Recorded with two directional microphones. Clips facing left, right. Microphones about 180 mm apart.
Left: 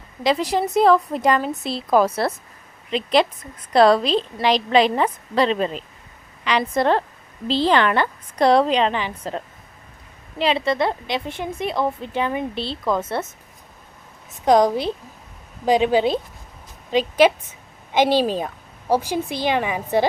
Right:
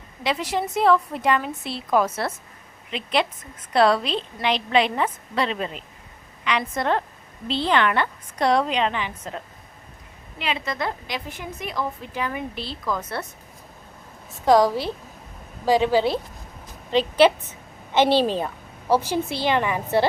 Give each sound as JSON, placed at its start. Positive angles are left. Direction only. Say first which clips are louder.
{"t": 0.2, "sound": "a woman's voice", "louder": "left 5 dB", "side_deg": 35}
{"t": 14.4, "sound": "a woman's voice", "louder": "left 1 dB", "side_deg": 20}